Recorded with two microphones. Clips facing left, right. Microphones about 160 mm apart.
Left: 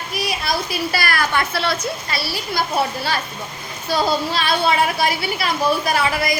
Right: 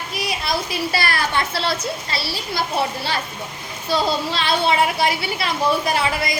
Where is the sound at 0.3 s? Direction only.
25° right (ahead or behind).